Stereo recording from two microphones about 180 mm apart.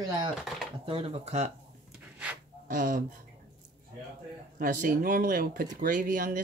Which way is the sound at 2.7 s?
50° right (ahead or behind).